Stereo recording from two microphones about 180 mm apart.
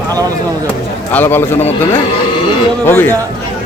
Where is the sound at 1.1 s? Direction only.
10° left (ahead or behind).